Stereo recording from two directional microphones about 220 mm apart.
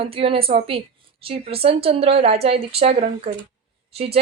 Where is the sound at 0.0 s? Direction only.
25° right (ahead or behind).